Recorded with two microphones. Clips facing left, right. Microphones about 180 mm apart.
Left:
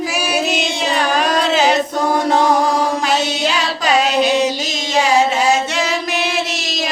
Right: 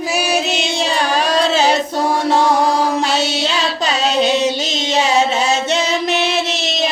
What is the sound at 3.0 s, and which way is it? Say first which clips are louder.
Child singing: even; 30° right (ahead or behind).